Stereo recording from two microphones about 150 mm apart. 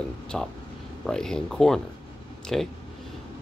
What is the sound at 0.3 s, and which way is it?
Speech, centre (ahead or behind).